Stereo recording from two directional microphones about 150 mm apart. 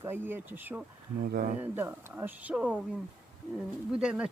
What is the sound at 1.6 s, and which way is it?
Speech, 15° right (ahead or behind).